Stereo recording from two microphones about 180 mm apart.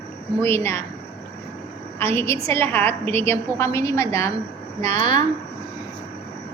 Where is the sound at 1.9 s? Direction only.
15° left (ahead or behind).